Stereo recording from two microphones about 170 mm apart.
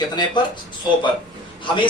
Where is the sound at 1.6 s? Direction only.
30° left (ahead or behind).